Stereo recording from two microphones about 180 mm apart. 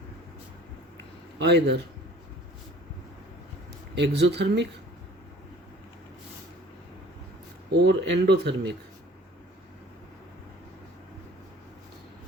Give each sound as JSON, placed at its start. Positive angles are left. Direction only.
{"t": 1.4, "sound": "speech", "side_deg": -70}
{"t": 3.9, "sound": "speech", "side_deg": -70}
{"t": 7.7, "sound": "speech", "side_deg": -70}